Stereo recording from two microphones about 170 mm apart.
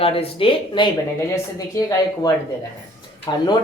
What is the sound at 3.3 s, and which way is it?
Speech, 25° left (ahead or behind).